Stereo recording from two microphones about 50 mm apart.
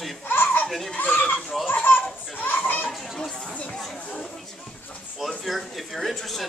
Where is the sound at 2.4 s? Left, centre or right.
Left.